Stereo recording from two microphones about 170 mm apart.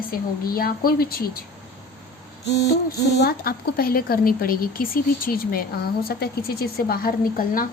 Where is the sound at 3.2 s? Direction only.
65° left (ahead or behind).